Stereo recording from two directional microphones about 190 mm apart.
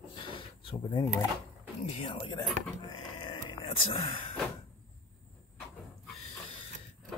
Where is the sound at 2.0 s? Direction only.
25° left (ahead or behind).